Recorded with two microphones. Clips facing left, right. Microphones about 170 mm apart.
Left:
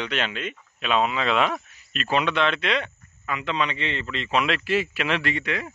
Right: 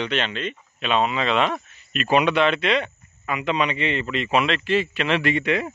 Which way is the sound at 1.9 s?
10° right (ahead or behind).